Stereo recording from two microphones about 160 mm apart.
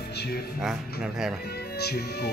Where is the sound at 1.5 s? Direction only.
85° left.